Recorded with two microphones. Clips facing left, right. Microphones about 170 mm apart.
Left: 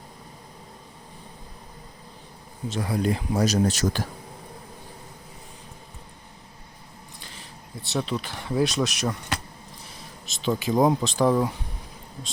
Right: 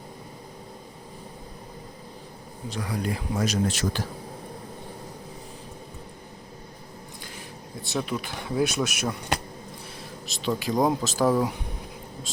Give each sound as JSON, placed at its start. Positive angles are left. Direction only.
{"t": 2.6, "sound": "speech", "side_deg": 25}
{"t": 7.9, "sound": "speech", "side_deg": 0}
{"t": 10.2, "sound": "speech", "side_deg": 0}